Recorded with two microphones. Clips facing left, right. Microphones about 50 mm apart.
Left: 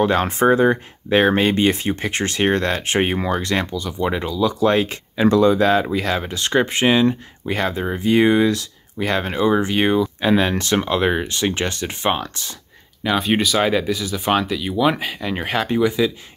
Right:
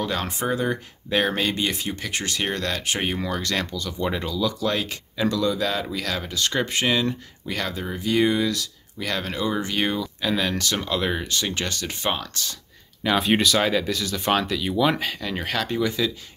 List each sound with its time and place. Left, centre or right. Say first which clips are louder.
0.0 s speech: left 10 dB; left
13.0 s speech: left 1 dB; centre